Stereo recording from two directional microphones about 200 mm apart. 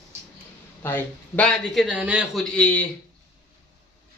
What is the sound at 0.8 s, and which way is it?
A man's voice, 10° left (ahead or behind).